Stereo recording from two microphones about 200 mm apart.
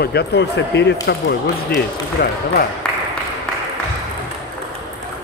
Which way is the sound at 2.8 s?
5° left (ahead or behind).